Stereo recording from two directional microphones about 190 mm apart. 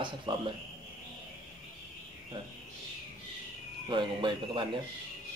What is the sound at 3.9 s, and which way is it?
Speech, 25° right (ahead or behind).